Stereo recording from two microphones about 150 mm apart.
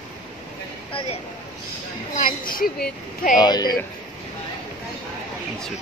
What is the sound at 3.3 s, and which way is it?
Speech, 30° left (ahead or behind).